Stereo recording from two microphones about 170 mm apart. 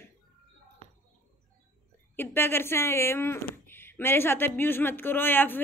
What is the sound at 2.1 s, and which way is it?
Speech, 10° left (ahead or behind).